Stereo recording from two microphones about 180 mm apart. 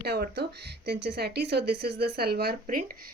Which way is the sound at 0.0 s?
65° right (ahead or behind).